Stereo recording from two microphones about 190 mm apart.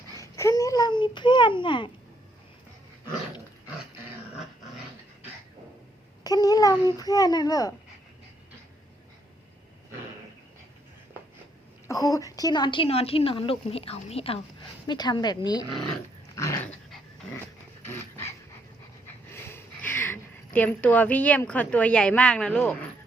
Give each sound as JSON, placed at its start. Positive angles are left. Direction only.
{"t": 0.2, "sound": "a child's voice", "side_deg": 15}
{"t": 6.2, "sound": "babbling", "side_deg": 20}
{"t": 11.9, "sound": "speech", "side_deg": 15}
{"t": 16.3, "sound": "dog", "side_deg": 15}
{"t": 17.8, "sound": "dog", "side_deg": 15}
{"t": 19.3, "sound": "a woman's voice", "side_deg": 10}